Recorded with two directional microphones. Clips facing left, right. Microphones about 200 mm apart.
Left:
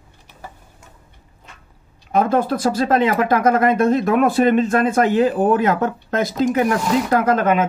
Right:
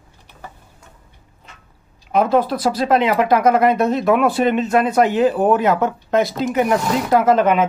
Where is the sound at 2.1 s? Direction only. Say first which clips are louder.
Right 1 dB; 50° left (ahead or behind).